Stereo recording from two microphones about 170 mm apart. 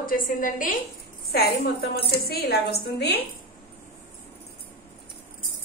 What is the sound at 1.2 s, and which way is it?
A woman's voice, 65° left (ahead or behind).